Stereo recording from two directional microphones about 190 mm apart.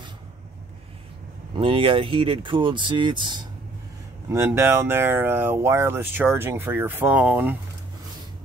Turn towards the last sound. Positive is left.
turn(degrees=-10)  # may be behind; listen again after turning